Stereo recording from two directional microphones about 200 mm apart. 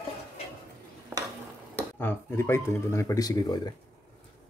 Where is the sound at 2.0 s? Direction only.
10° left (ahead or behind).